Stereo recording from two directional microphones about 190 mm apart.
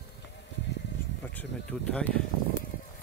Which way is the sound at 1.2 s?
5° left (ahead or behind).